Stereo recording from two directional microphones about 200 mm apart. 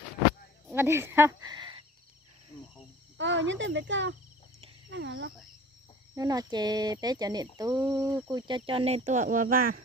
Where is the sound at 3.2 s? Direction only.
65° right (ahead or behind).